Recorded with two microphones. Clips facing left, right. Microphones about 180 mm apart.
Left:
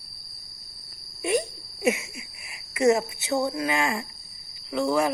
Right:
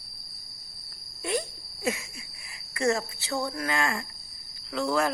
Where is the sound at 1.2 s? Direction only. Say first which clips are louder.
Left 5 dB; 15° left (ahead or behind).